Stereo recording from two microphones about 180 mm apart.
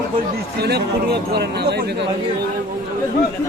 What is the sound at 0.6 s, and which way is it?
Speech, 65° right (ahead or behind).